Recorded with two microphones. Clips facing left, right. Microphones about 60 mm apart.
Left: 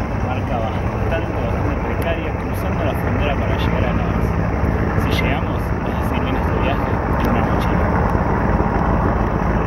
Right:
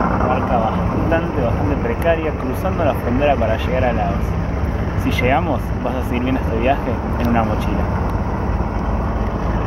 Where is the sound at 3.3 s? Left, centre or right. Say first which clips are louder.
Right 2 dB; left.